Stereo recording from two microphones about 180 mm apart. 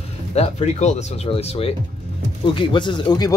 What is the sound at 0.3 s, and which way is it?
Speech, 35° left (ahead or behind).